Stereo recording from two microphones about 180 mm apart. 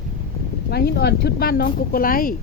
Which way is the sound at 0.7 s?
65° left (ahead or behind).